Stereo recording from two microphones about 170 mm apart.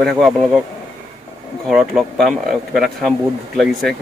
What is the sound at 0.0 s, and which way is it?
Speech, centre (ahead or behind).